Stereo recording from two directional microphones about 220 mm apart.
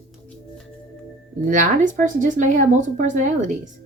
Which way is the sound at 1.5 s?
35° right (ahead or behind).